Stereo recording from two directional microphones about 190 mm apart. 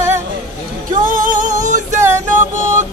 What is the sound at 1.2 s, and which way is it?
Music, 45° right (ahead or behind).